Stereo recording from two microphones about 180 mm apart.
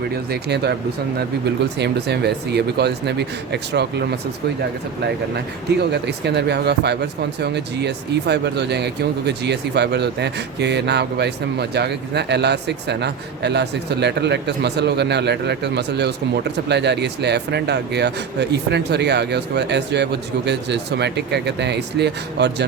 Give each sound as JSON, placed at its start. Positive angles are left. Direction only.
{"t": 0.3, "sound": "speech", "side_deg": -65}
{"t": 1.8, "sound": "speech", "side_deg": -65}
{"t": 5.9, "sound": "speech", "side_deg": -70}